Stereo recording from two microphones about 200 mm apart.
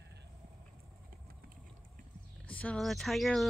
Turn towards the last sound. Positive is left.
turn(degrees=0)  # may be behind; listen again after turning